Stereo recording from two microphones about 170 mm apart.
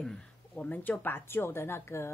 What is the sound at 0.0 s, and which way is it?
A woman's voice, 5° left (ahead or behind).